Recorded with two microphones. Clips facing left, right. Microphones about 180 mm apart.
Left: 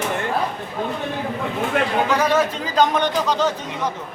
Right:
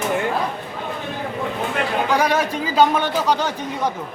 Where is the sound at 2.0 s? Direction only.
10° right (ahead or behind).